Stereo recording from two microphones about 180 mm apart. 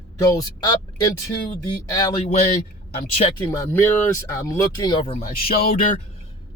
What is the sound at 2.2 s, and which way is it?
Speech, 35° left (ahead or behind).